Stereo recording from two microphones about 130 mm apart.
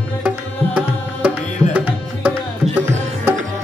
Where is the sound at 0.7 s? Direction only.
10° right (ahead or behind).